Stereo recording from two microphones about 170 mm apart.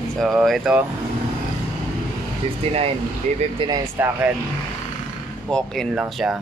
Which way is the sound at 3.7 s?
15° right (ahead or behind).